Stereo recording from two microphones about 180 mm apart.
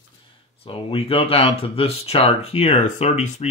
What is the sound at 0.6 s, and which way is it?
Speech, 30° left (ahead or behind).